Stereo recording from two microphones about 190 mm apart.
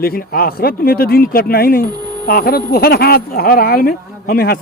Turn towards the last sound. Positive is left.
turn(degrees=55)  # may be behind; listen again after turning